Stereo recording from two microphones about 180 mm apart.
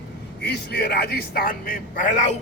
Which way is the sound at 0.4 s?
65° left (ahead or behind).